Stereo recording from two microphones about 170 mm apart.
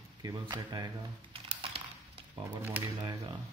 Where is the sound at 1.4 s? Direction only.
30° right (ahead or behind).